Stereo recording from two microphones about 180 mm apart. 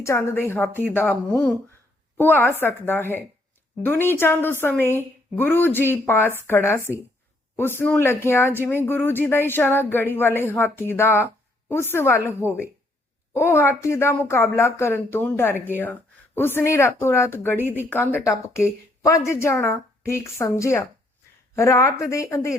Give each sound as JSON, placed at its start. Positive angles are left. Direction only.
{"t": 0.0, "sound": "a woman's voice", "side_deg": 15}
{"t": 0.7, "sound": "speech", "side_deg": -10}
{"t": 0.9, "sound": "a woman's voice", "side_deg": 10}
{"t": 17.6, "sound": "speech", "side_deg": -10}
{"t": 17.8, "sound": "a woman's voice", "side_deg": 10}